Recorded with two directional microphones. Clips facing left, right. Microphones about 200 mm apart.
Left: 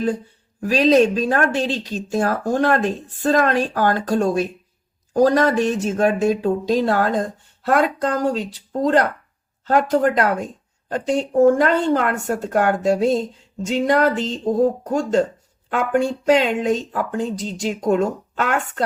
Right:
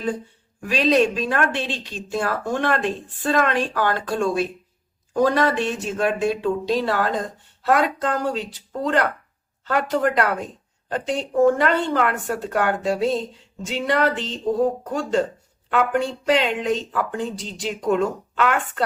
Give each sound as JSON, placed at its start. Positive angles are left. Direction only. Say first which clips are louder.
{"t": 0.6, "sound": "speech", "louder": "left 4 dB", "side_deg": 40}